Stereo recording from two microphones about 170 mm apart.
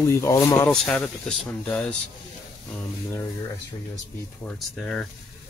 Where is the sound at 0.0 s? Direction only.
15° left (ahead or behind).